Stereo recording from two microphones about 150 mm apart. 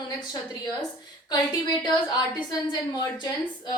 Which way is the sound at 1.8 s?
30° left (ahead or behind).